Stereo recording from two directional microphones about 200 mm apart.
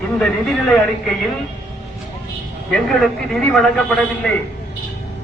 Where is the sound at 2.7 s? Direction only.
Centre (ahead or behind).